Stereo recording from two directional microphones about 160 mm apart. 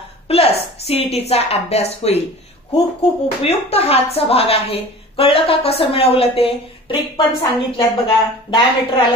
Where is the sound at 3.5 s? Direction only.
40° left (ahead or behind).